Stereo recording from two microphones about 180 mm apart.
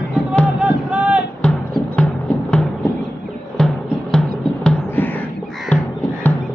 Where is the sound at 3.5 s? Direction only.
5° left (ahead or behind).